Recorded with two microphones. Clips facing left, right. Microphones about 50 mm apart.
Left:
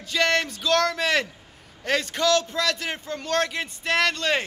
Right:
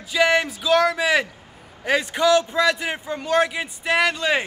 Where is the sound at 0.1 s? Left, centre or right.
Centre.